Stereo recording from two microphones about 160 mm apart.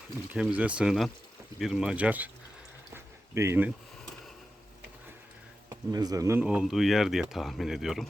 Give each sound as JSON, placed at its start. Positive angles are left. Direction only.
{"t": 0.3, "sound": "speech", "side_deg": -10}
{"t": 2.9, "sound": "a sound", "side_deg": -15}
{"t": 5.6, "sound": "speech", "side_deg": -25}